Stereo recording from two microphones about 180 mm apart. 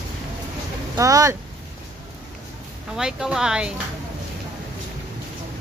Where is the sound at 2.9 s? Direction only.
5° right (ahead or behind).